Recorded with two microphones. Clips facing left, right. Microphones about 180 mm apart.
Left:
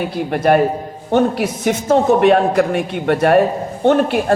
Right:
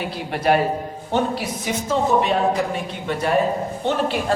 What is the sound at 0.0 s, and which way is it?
A man's voice, 50° left (ahead or behind).